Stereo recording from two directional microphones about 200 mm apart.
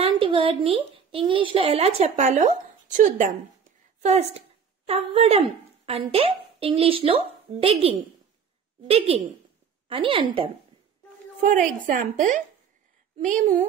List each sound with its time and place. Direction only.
0.0 s a woman's voice: 25° right (ahead or behind)
11.4 s a woman's voice: 40° right (ahead or behind)